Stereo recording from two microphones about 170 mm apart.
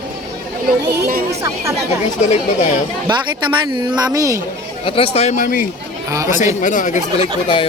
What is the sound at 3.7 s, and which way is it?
Speech, 20° right (ahead or behind).